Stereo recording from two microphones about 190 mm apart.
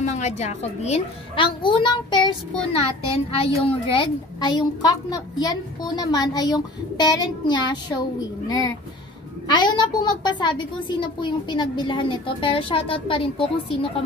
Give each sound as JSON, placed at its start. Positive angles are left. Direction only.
{"t": 0.0, "sound": "a woman's voice", "side_deg": 35}
{"t": 9.5, "sound": "a woman's voice", "side_deg": 25}